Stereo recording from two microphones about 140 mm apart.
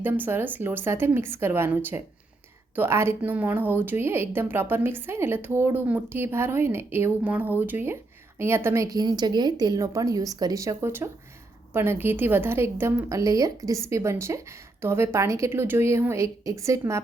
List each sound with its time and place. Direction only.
0.0 s a woman's voice: 15° right (ahead or behind)